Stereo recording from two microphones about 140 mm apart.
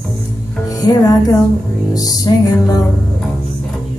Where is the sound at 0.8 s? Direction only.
30° left (ahead or behind).